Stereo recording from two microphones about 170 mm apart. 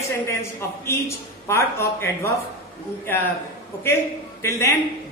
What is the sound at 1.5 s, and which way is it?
Speech, 15° left (ahead or behind).